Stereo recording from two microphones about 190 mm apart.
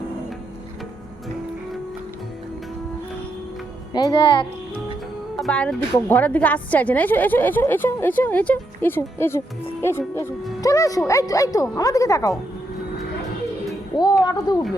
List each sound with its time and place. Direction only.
3.9 s a child's voice: 25° left (ahead or behind)
5.4 s a woman's voice: 5° left (ahead or behind)
10.6 s a woman's voice: 20° left (ahead or behind)
13.9 s a child's voice: 20° left (ahead or behind)